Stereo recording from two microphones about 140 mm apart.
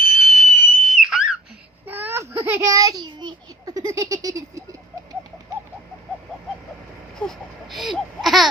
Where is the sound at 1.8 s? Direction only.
15° right (ahead or behind).